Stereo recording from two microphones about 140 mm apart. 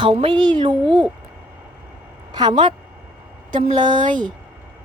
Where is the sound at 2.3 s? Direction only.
35° right (ahead or behind).